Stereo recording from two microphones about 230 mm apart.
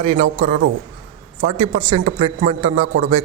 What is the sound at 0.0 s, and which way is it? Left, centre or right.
Speech, right.